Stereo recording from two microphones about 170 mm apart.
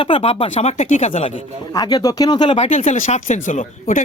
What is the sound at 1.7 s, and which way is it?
Speech, 25° left (ahead or behind).